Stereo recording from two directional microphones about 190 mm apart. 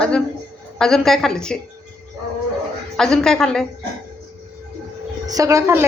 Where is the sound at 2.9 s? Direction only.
5° left (ahead or behind).